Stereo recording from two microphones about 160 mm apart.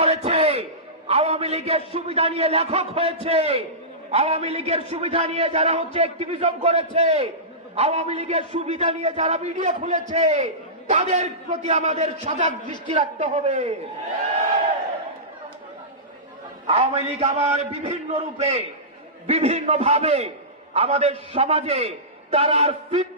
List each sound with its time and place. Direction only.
0.0 s a man's voice: 40° right (ahead or behind)
16.6 s a man's voice: 35° right (ahead or behind)